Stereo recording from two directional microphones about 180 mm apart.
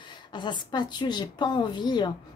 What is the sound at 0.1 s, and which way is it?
A woman's voice, 25° left (ahead or behind).